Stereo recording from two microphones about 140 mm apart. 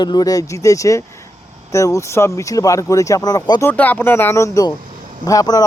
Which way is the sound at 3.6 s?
10° left (ahead or behind).